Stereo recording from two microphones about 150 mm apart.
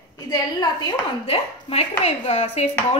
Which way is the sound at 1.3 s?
45° left (ahead or behind).